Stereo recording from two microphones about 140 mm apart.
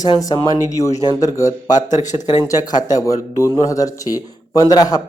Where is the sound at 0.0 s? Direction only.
25° left (ahead or behind).